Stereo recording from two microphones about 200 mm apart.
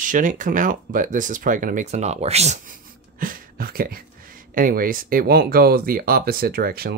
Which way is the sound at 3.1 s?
45° right (ahead or behind).